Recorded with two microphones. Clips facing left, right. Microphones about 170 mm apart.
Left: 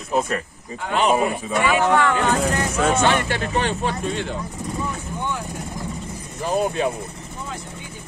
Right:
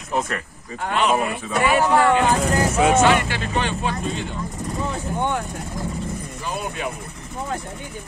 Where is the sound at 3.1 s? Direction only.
45° left (ahead or behind).